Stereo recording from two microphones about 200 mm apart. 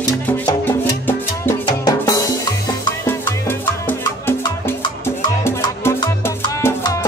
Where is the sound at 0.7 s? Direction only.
10° left (ahead or behind).